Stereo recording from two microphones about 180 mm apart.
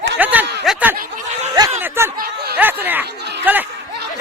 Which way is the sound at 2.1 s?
50° right (ahead or behind).